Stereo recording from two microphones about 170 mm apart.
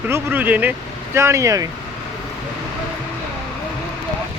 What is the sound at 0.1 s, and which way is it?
Speech, 10° right (ahead or behind).